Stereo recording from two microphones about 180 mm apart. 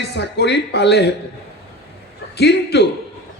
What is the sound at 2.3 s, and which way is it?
Speech, 65° left (ahead or behind).